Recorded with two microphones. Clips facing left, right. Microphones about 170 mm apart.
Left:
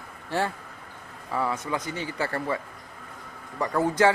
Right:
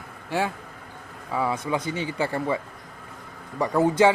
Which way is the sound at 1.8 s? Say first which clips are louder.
Right 4 dB; 25° right (ahead or behind).